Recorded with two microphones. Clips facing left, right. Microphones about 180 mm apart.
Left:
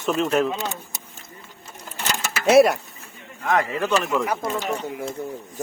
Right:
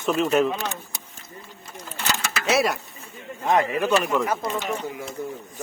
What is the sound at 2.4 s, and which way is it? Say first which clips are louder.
Speech: left 8 dB; 55° left (ahead or behind).